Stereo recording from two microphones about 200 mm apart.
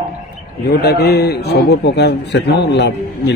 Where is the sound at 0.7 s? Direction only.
50° left (ahead or behind).